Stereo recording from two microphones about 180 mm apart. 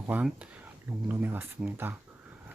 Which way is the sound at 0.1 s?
5° right (ahead or behind).